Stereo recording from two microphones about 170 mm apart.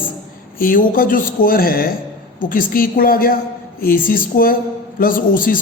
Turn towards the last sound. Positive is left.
turn(degrees=55)  # may be behind; listen again after turning